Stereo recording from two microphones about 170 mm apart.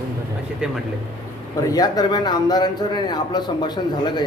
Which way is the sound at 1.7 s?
20° left (ahead or behind).